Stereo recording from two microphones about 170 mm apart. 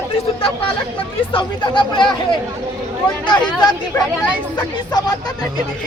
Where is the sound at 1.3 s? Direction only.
30° left (ahead or behind).